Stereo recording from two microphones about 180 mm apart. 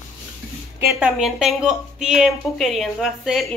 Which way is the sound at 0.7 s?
10° right (ahead or behind).